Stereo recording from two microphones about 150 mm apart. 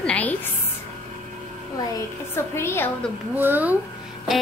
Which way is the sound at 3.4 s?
10° right (ahead or behind).